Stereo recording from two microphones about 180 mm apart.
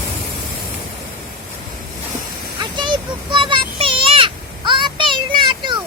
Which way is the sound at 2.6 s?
25° right (ahead or behind).